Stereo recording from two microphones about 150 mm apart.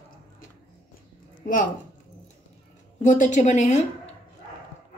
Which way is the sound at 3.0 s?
55° left (ahead or behind).